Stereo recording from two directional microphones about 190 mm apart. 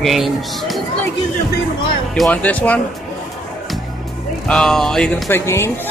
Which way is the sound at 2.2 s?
10° left (ahead or behind).